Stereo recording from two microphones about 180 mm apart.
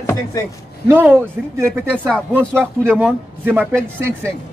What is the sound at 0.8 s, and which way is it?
Speech, 10° right (ahead or behind).